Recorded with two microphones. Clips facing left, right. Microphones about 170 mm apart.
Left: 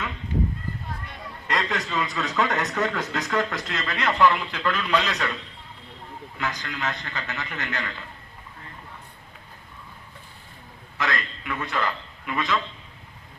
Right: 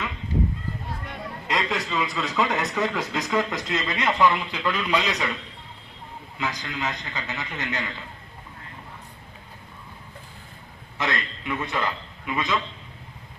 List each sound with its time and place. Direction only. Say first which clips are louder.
1.5 s a man's voice: even; 10° right (ahead or behind)
6.4 s a man's voice: right 1 dB; 10° right (ahead or behind)
10.9 s a man's voice: even; 25° right (ahead or behind)